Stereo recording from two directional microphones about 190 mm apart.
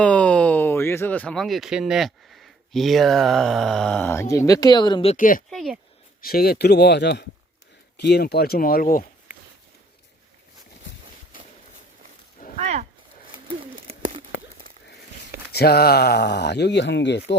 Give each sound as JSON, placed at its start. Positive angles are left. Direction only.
{"t": 0.0, "sound": "speech", "side_deg": 5}
{"t": 5.1, "sound": "speech", "side_deg": 45}
{"t": 5.5, "sound": "speech", "side_deg": 0}
{"t": 6.2, "sound": "speech", "side_deg": 55}
{"t": 12.5, "sound": "a sound", "side_deg": -35}
{"t": 13.8, "sound": "a sound", "side_deg": -30}
{"t": 15.5, "sound": "speech", "side_deg": 55}